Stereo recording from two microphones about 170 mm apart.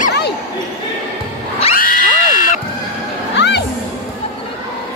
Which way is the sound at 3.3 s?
90° left.